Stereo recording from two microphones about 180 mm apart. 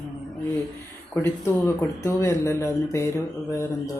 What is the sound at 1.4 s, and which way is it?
Speech, 15° left (ahead or behind).